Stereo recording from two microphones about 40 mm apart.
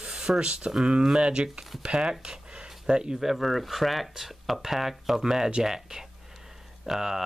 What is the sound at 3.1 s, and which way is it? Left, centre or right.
Speech, centre.